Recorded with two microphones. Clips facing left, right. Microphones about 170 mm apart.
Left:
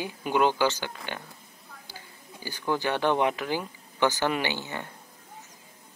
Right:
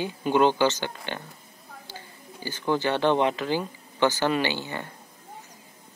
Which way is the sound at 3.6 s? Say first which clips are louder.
Right 2 dB; 20° right (ahead or behind).